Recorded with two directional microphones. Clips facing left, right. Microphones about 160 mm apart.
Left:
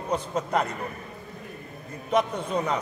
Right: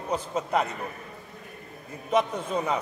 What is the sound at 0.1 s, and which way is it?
Speech, 5° right (ahead or behind).